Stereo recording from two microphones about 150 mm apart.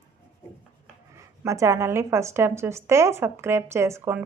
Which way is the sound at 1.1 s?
20° right (ahead or behind).